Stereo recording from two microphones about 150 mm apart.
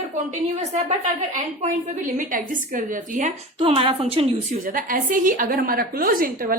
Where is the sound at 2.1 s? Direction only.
65° right (ahead or behind).